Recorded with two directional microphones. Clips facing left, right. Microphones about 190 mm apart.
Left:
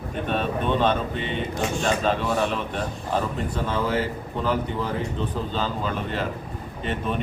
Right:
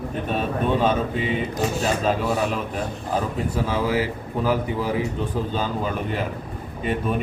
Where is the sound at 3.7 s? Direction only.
10° right (ahead or behind).